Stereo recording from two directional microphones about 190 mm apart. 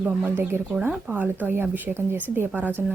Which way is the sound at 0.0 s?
10° right (ahead or behind).